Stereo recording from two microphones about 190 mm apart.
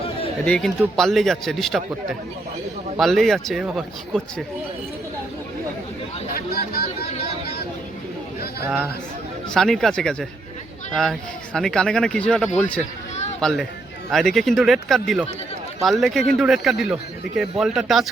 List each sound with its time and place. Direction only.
0.4 s a man's voice: 5° left (ahead or behind)
3.0 s a man's voice: centre (ahead or behind)
6.3 s speech: 55° left (ahead or behind)
9.5 s a man's voice: centre (ahead or behind)